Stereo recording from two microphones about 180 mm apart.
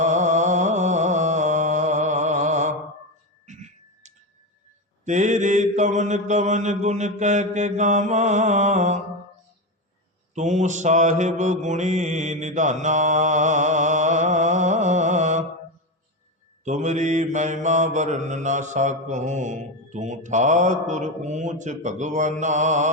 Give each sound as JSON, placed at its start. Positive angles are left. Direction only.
{"t": 0.0, "sound": "a sound", "side_deg": -40}
{"t": 3.4, "sound": "tick", "side_deg": -40}
{"t": 5.0, "sound": "mantra", "side_deg": -45}
{"t": 10.3, "sound": "mantra", "side_deg": -40}
{"t": 16.6, "sound": "mantra", "side_deg": -40}